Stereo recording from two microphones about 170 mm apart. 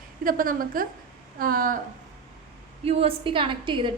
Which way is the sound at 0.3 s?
55° right (ahead or behind).